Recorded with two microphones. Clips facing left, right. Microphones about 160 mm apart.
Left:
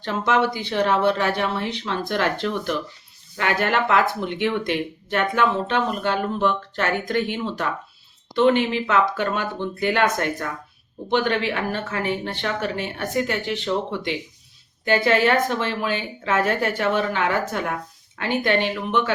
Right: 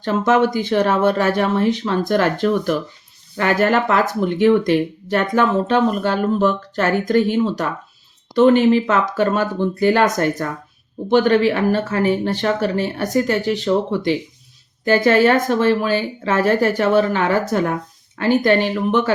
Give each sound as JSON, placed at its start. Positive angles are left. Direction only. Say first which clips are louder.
{"t": 0.0, "sound": "speech", "louder": "right 5 dB", "side_deg": -45}